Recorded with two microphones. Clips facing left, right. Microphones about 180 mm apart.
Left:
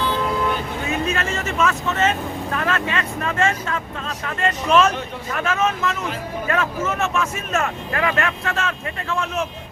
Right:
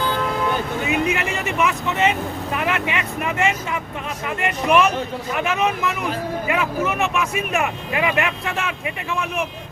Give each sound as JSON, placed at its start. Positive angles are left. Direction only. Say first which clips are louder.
{"t": 0.9, "sound": "speech", "louder": "right 1 dB", "side_deg": -15}